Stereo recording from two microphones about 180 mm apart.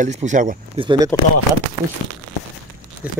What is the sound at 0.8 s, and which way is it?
Speech, 25° right (ahead or behind).